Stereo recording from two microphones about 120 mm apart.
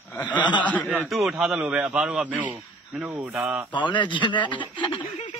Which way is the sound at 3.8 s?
40° left (ahead or behind).